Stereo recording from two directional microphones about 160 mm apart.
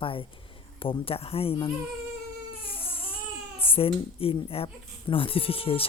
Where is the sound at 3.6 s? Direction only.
35° left (ahead or behind).